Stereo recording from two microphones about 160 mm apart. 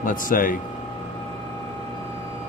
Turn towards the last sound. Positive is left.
turn(degrees=60)  # may be behind; listen again after turning